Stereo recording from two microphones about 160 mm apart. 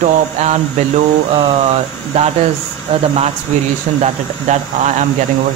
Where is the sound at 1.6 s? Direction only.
40° right (ahead or behind).